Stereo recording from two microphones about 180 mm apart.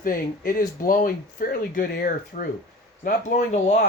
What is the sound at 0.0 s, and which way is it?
Speech, 50° left (ahead or behind).